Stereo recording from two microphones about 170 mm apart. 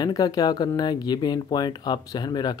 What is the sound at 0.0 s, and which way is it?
Speech, 25° left (ahead or behind).